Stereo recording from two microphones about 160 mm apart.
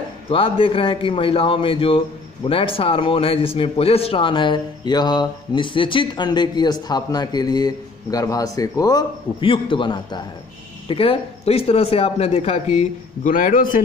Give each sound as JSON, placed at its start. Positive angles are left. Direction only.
{"t": 0.3, "sound": "a man's voice", "side_deg": 35}